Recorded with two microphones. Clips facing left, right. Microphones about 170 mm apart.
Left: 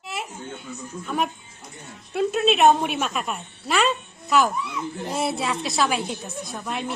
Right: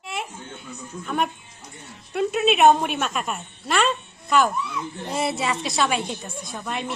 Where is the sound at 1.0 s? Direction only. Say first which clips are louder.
Right 1 dB; centre (ahead or behind).